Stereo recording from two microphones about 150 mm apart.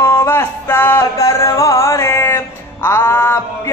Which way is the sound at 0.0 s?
15° left (ahead or behind).